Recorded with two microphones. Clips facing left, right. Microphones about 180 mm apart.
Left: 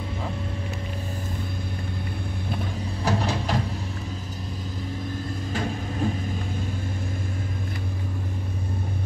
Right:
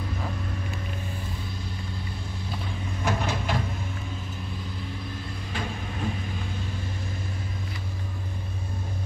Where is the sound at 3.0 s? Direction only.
35° left (ahead or behind).